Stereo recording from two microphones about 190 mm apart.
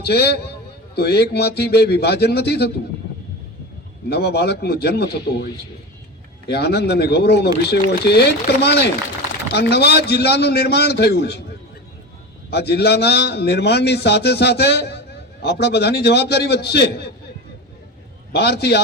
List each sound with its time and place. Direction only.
0.0 s a man's voice: 60° left (ahead or behind)
4.1 s a man's voice: 60° left (ahead or behind)
6.5 s a man's voice: 60° left (ahead or behind)
12.5 s a man's voice: 60° left (ahead or behind)
18.3 s a man's voice: 60° left (ahead or behind)